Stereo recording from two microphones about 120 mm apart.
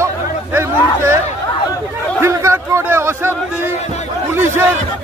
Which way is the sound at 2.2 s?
25° right (ahead or behind).